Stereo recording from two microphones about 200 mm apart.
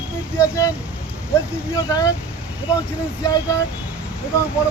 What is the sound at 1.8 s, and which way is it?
Speech, 15° left (ahead or behind).